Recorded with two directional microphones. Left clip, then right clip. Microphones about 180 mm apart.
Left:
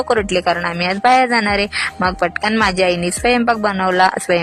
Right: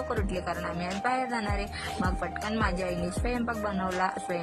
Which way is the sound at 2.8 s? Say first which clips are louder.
Left 16 dB; 35° left (ahead or behind).